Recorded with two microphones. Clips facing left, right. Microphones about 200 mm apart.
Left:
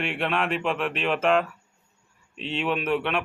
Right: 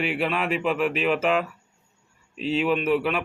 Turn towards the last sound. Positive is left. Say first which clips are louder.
# right 3 dB
turn(degrees=0)  # may be behind; listen again after turning